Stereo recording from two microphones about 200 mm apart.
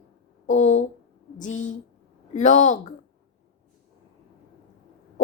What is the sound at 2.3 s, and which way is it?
Speech, 40° left (ahead or behind).